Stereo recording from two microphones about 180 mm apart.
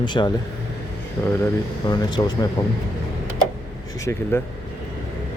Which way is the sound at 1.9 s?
25° left (ahead or behind).